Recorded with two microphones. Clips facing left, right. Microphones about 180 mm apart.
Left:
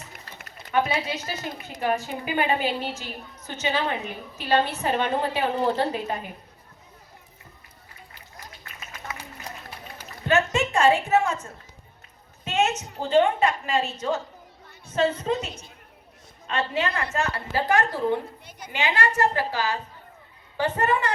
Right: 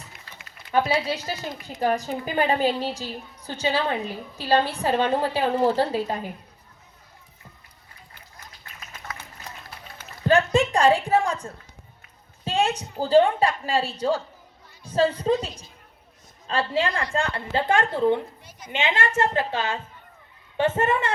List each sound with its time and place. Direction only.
0.7 s a woman's voice: 30° right (ahead or behind)
10.2 s a sound: 35° right (ahead or behind)
11.1 s a woman's voice: 35° right (ahead or behind)
12.5 s a woman's voice: 30° right (ahead or behind)
16.5 s a woman's voice: 30° right (ahead or behind)